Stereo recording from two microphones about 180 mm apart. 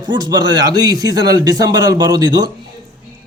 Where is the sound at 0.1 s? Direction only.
25° right (ahead or behind).